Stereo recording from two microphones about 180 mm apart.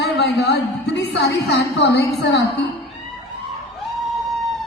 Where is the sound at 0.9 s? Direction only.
70° left (ahead or behind).